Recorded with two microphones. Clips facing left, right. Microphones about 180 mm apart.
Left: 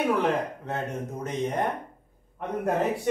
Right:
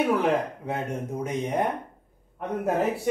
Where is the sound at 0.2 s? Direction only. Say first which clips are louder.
Right 2 dB; 10° right (ahead or behind).